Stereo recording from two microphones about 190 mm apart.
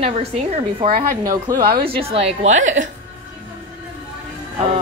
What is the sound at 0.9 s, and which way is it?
Speech, 45° right (ahead or behind).